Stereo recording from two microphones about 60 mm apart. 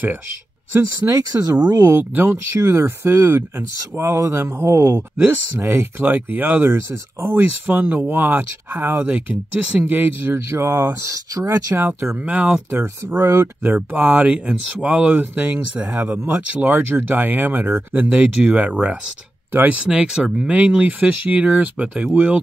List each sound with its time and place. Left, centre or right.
0.7 s speech: right
1.9 s speech: right
2.5 s speech: right
4.6 s speech: right
5.2 s speech: right
6.0 s speech: right
10.3 s speech: right
10.9 s speech: right
12.3 s speech: right
13.2 s speech: right
13.7 s speech: right
14.2 s speech: centre